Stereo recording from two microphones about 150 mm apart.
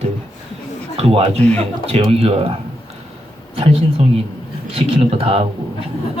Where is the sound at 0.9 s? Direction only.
40° right (ahead or behind).